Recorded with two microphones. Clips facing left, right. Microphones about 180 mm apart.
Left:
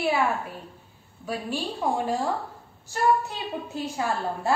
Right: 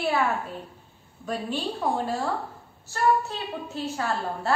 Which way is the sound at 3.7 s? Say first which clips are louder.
Even; 15° left (ahead or behind).